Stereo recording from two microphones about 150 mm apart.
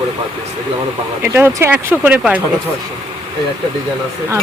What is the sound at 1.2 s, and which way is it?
Speech, 15° right (ahead or behind).